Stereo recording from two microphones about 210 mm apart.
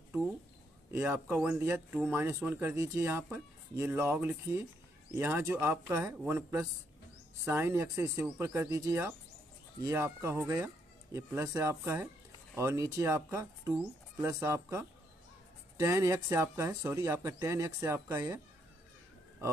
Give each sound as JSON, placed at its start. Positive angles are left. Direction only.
{"t": 0.9, "sound": "speech", "side_deg": -10}